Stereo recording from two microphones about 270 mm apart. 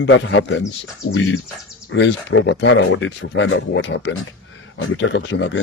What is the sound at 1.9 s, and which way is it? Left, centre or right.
Speech, left.